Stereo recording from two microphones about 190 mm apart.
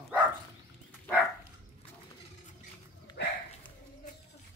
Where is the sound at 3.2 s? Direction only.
60° left (ahead or behind).